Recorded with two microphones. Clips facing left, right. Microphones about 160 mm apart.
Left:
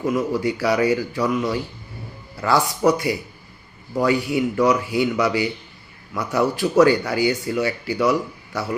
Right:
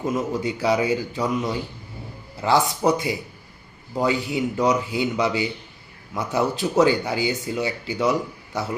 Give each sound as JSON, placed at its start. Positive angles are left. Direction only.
{"t": 0.0, "sound": "a man's voice", "side_deg": -20}